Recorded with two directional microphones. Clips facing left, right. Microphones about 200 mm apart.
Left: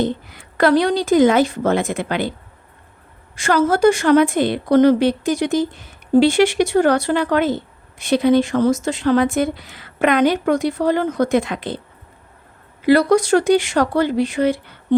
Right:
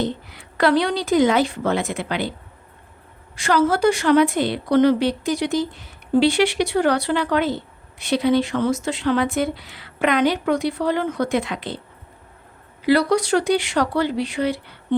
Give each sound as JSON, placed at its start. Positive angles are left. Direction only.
{"t": 0.0, "sound": "a woman's voice", "side_deg": 50}
{"t": 3.3, "sound": "a woman's voice", "side_deg": 50}
{"t": 12.8, "sound": "a woman's voice", "side_deg": 50}